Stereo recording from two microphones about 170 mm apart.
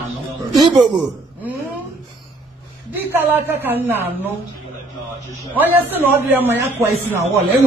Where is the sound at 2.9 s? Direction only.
10° right (ahead or behind).